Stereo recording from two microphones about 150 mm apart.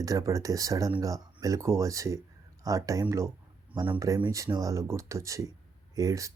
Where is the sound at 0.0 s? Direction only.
25° right (ahead or behind).